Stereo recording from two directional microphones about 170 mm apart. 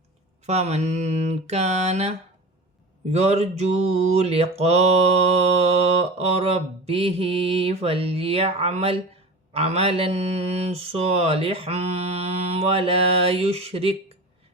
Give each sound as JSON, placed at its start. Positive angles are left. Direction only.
{"t": 0.4, "sound": "mantra", "side_deg": -40}